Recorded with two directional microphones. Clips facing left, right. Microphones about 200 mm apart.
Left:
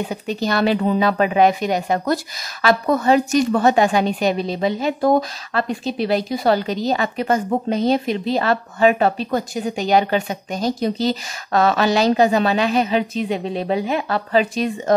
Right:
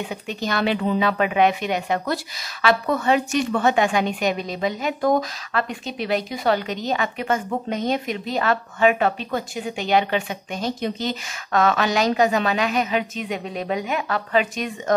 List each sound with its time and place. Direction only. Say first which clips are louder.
0.0 s a woman's voice: left 5 dB; 35° left (ahead or behind)